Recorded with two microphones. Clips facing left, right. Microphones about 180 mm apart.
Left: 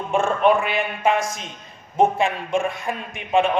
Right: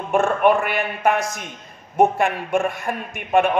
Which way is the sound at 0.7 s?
55° right (ahead or behind).